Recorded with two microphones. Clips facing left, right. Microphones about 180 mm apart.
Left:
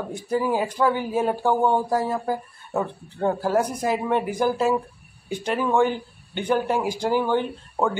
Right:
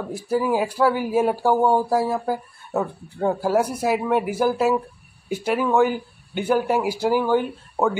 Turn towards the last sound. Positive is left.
turn(degrees=-5)  # may be behind; listen again after turning